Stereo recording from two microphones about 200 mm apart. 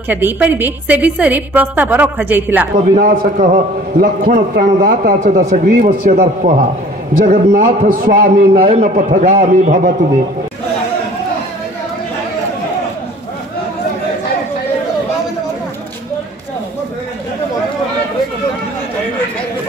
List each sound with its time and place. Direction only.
0.1 s a woman's voice: 10° right (ahead or behind)
2.9 s a man's voice: 45° right (ahead or behind)